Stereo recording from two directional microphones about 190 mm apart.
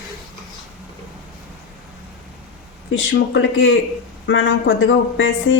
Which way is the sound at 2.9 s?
80° left.